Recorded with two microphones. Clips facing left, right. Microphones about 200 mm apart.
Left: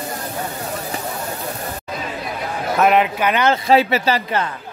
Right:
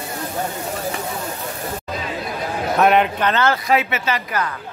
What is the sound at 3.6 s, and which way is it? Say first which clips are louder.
Speech: left 4 dB; 35° left (ahead or behind).